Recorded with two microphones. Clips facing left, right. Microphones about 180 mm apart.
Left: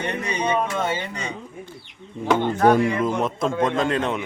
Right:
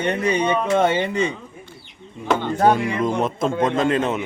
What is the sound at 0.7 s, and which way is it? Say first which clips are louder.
Speech: right 7 dB; 60° right (ahead or behind).